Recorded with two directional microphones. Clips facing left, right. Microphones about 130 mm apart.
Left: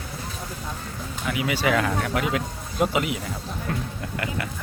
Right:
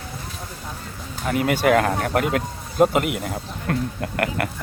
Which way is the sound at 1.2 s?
45° right (ahead or behind).